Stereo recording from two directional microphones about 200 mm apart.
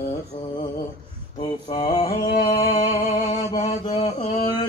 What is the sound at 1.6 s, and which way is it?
Mantra, 20° left (ahead or behind).